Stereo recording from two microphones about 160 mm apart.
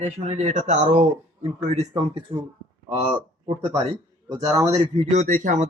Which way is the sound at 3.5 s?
40° right (ahead or behind).